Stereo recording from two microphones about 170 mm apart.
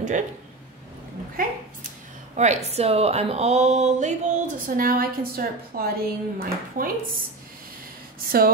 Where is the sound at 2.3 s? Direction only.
40° right (ahead or behind).